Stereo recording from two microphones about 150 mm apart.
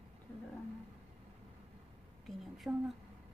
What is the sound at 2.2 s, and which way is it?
Speech, centre (ahead or behind).